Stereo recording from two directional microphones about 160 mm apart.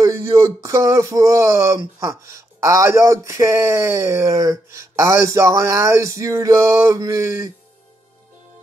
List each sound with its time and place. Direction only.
0.0 s speech: 20° right (ahead or behind)